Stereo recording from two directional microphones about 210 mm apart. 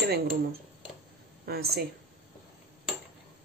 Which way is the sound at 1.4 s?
50° right (ahead or behind).